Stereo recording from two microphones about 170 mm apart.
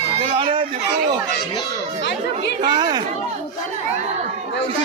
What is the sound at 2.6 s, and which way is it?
Speech, 25° right (ahead or behind).